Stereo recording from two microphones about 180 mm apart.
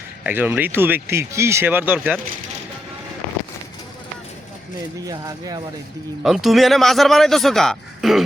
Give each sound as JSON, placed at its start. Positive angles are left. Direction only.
{"t": 0.3, "sound": "speech", "side_deg": -10}
{"t": 4.9, "sound": "speech", "side_deg": -20}
{"t": 6.2, "sound": "a man's voice", "side_deg": 0}